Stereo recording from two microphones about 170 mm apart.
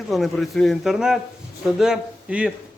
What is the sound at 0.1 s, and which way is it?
Speech, centre (ahead or behind).